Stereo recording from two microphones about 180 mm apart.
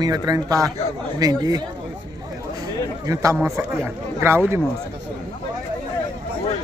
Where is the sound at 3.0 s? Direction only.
20° right (ahead or behind).